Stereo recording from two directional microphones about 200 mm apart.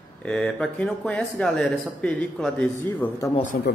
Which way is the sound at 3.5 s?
45° left (ahead or behind).